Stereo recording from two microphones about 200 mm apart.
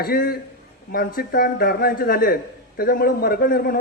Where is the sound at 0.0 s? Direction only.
50° left (ahead or behind).